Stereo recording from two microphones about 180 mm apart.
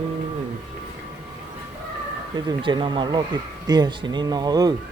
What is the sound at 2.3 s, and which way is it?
Speech, 25° right (ahead or behind).